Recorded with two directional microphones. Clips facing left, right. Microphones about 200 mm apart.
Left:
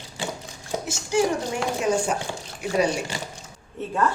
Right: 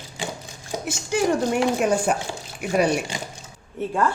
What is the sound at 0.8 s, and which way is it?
A woman's voice, 60° right (ahead or behind).